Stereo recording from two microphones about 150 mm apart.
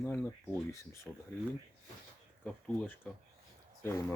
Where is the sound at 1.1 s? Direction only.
Centre (ahead or behind).